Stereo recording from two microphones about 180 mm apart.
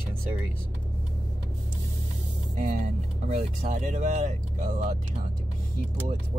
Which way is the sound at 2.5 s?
45° right (ahead or behind).